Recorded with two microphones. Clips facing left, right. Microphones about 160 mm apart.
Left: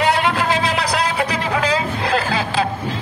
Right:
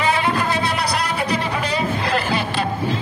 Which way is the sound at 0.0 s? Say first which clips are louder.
Left 2 dB; 85° left.